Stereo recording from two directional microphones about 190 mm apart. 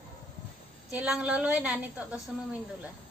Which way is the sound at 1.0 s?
5° right (ahead or behind).